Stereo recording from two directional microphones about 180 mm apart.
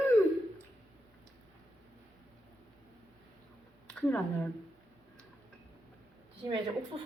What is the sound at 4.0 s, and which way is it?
Speech, 10° left (ahead or behind).